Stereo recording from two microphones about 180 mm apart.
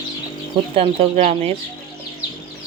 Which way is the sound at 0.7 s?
35° right (ahead or behind).